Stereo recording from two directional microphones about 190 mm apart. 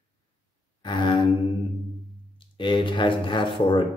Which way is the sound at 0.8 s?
25° left (ahead or behind).